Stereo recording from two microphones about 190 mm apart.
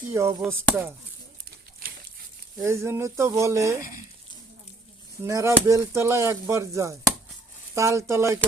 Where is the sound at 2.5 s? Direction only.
15° right (ahead or behind).